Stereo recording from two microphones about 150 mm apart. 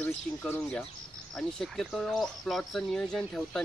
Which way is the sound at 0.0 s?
10° left (ahead or behind).